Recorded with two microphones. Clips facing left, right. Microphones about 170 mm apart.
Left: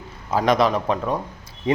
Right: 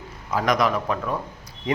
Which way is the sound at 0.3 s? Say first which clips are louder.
Left 3 dB; 30° left (ahead or behind).